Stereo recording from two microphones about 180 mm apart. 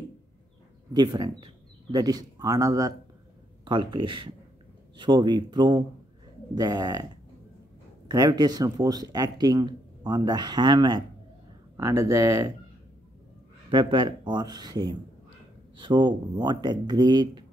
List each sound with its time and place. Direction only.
0.9 s speech: 25° right (ahead or behind)
8.1 s speech: 20° right (ahead or behind)
13.7 s speech: 25° right (ahead or behind)